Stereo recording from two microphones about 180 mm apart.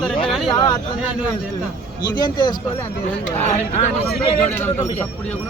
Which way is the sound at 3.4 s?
40° left (ahead or behind).